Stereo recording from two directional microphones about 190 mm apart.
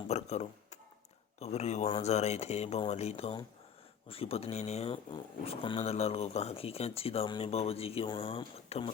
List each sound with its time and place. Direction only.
0.1 s speech: 35° left (ahead or behind)